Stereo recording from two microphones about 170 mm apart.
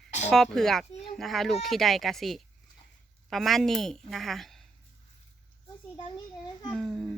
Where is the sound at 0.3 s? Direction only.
5° left (ahead or behind).